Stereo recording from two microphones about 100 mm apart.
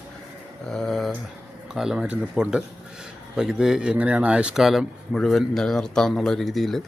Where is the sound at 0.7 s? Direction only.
5° left (ahead or behind).